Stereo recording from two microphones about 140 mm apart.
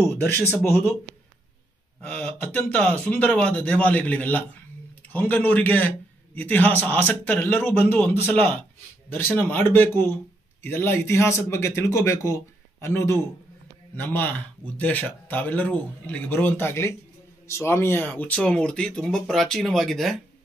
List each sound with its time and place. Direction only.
0.7 s a man's voice: 15° left (ahead or behind)
2.0 s a man's voice: 5° left (ahead or behind)